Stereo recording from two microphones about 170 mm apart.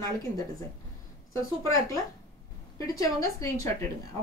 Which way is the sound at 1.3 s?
20° left (ahead or behind).